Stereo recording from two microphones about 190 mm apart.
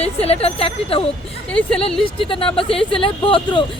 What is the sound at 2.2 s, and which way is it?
Speech, 30° left (ahead or behind).